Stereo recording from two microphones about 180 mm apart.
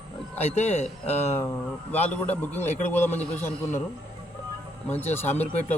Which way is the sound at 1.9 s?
10° left (ahead or behind).